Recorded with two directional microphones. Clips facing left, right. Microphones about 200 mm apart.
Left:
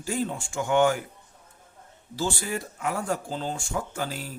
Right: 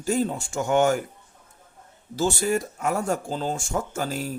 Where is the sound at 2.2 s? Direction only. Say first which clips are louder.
Right 6 dB; 45° right (ahead or behind).